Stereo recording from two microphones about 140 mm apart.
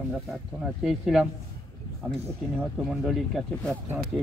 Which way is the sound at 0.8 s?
5° right (ahead or behind).